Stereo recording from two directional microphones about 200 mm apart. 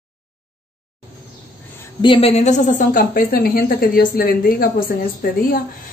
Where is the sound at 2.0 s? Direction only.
25° left (ahead or behind).